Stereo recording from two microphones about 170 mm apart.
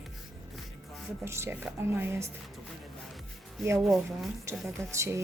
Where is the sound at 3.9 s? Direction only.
Centre (ahead or behind).